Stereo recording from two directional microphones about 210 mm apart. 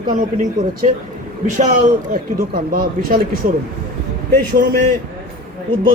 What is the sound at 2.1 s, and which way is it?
Speech, 45° right (ahead or behind).